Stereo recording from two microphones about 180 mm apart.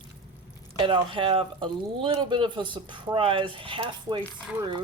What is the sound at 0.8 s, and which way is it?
Speech, 30° right (ahead or behind).